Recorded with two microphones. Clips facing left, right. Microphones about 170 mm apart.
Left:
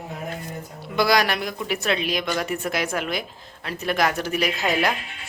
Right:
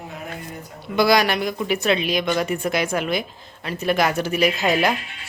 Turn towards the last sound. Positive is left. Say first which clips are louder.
# right 4 dB
turn(degrees=0)  # may be behind; listen again after turning